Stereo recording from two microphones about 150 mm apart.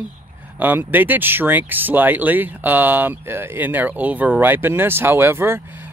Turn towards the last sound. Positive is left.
turn(degrees=-15)  # may be behind; listen again after turning